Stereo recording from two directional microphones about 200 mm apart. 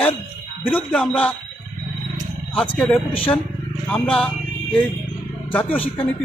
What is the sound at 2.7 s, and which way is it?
Speech, 5° left (ahead or behind).